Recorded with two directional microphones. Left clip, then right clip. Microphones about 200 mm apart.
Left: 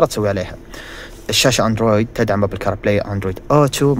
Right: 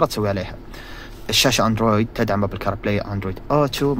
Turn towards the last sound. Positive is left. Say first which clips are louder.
# left 5 dB
turn(degrees=20)  # may be behind; listen again after turning